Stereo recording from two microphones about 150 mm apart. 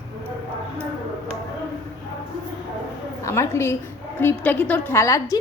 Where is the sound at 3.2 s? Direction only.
20° left (ahead or behind).